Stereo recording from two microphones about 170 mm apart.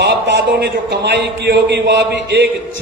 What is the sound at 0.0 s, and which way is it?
A man's voice, 80° right.